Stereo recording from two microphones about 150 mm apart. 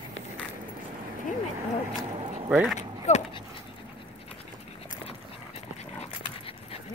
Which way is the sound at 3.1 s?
50° left (ahead or behind).